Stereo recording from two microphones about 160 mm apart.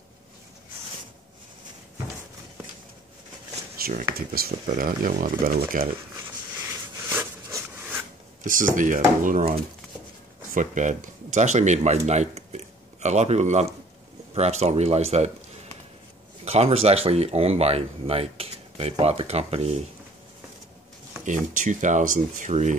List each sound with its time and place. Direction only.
4.1 s speech: 70° right (ahead or behind)
7.0 s a sound: 15° right (ahead or behind)
8.5 s speech: 55° right (ahead or behind)
12.1 s a sound: 45° right (ahead or behind)
14.3 s speech: 40° right (ahead or behind)
16.4 s speech: 40° right (ahead or behind)
21.3 s speech: 50° right (ahead or behind)